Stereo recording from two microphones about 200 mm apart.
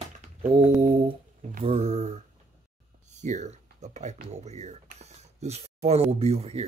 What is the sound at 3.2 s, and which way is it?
Speech, 35° right (ahead or behind).